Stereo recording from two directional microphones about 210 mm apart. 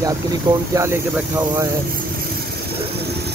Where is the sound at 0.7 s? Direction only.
10° right (ahead or behind).